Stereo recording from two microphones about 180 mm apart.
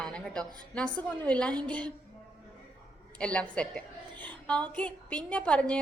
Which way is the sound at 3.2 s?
5° left (ahead or behind).